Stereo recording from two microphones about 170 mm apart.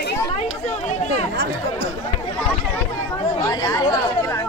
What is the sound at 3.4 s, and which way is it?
Chatter, 20° left (ahead or behind).